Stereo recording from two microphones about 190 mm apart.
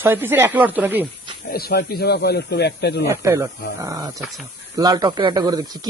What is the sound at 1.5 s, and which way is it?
Speech, 55° left (ahead or behind).